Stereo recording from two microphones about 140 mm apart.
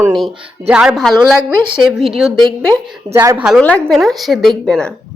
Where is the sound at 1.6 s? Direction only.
35° right (ahead or behind).